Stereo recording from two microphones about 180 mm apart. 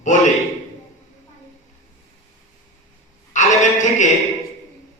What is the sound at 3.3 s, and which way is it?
Speech, 45° left (ahead or behind).